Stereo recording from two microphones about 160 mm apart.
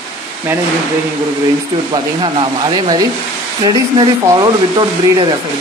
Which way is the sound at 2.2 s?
25° right (ahead or behind).